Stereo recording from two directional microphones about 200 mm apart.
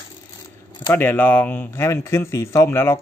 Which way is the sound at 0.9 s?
10° left (ahead or behind).